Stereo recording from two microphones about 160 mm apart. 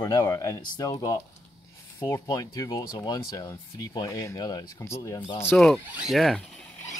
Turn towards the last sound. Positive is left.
turn(degrees=0)  # may be behind; listen again after turning